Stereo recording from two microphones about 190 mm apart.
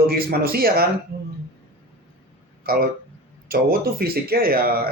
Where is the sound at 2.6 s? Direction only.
50° right (ahead or behind).